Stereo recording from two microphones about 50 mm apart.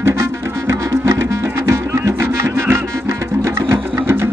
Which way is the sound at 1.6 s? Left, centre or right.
Right.